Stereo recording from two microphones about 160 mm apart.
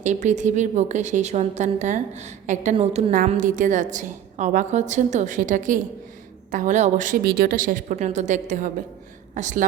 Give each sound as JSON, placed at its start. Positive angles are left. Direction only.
{"t": 0.0, "sound": "a woman's voice", "side_deg": -50}
{"t": 3.3, "sound": "a woman's voice", "side_deg": -55}
{"t": 7.3, "sound": "a woman's voice", "side_deg": -70}